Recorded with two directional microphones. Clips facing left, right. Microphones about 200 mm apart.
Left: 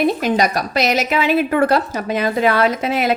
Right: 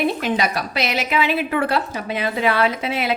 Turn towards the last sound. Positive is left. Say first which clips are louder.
# left 4 dB
turn(degrees=45)  # may be behind; listen again after turning